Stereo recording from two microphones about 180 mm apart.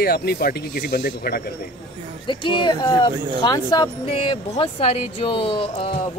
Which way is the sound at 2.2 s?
25° left (ahead or behind).